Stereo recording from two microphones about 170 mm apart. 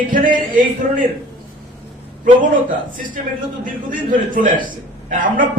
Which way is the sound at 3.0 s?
55° right (ahead or behind).